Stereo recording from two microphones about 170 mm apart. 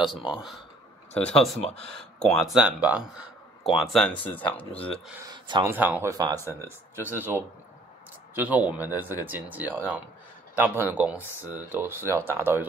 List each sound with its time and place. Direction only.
1.1 s speech: 5° left (ahead or behind)
5.2 s speech: 25° right (ahead or behind)
5.7 s speech: 10° right (ahead or behind)
6.1 s speech: 25° right (ahead or behind)
6.4 s speech: 15° left (ahead or behind)
7.2 s speech: 10° right (ahead or behind)